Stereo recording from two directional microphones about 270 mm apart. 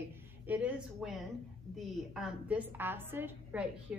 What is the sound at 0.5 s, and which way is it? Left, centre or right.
A woman's voice, centre.